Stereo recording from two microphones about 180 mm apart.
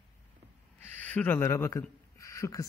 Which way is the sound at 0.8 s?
10° left (ahead or behind).